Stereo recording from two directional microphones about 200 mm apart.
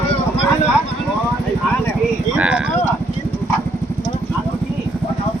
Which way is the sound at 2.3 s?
5° right (ahead or behind).